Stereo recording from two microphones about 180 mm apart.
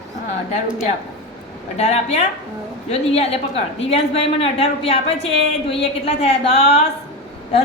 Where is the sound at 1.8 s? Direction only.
35° left (ahead or behind).